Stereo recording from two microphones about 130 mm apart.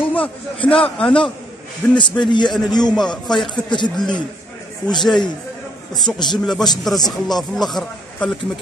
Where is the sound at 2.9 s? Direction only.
5° left (ahead or behind).